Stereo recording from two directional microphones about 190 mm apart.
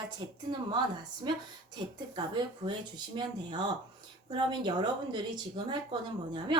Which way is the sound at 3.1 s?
25° right (ahead or behind).